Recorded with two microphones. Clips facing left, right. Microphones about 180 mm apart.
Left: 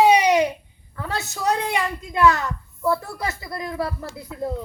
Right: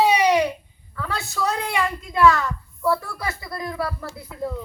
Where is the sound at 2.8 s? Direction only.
25° left (ahead or behind).